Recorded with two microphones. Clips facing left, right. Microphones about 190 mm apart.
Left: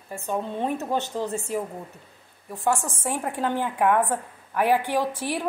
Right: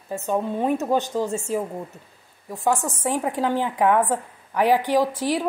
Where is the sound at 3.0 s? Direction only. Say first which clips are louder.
Right 4 dB; 10° right (ahead or behind).